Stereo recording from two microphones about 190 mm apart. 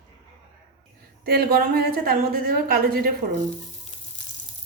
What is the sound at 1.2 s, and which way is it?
A woman's voice, 55° right (ahead or behind).